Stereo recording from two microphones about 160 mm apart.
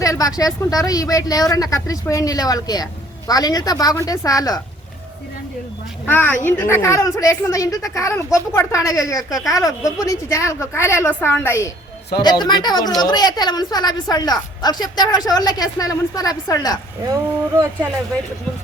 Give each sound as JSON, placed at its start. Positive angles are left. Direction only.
{"t": 0.0, "sound": "a woman's voice", "side_deg": 20}
{"t": 6.1, "sound": "a woman's voice", "side_deg": 10}
{"t": 17.1, "sound": "speech", "side_deg": -20}